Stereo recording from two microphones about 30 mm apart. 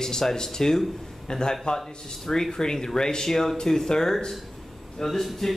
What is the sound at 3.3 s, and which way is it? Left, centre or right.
Speech, centre.